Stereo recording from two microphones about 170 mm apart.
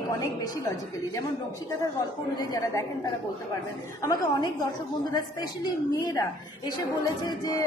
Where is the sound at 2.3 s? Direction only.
20° left (ahead or behind).